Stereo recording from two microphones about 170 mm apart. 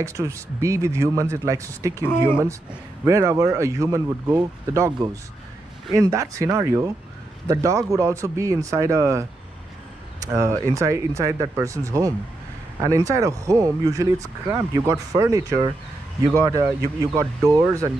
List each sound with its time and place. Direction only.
0.0 s speech: 20° right (ahead or behind)
10.2 s speech: 15° right (ahead or behind)